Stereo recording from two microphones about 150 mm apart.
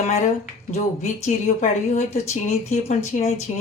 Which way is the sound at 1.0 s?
55° left (ahead or behind).